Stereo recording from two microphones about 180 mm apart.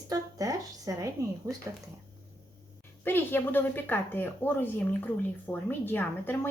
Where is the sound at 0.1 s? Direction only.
20° right (ahead or behind).